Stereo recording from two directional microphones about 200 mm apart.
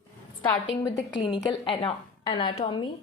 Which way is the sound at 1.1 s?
25° left (ahead or behind).